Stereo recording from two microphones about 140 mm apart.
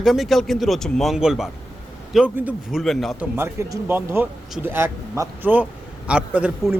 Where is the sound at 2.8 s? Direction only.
Centre (ahead or behind).